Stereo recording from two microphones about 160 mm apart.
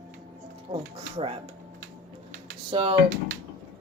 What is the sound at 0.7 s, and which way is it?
Speech, 35° right (ahead or behind).